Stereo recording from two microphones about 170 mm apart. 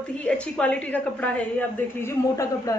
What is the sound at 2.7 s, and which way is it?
Speech, 20° left (ahead or behind).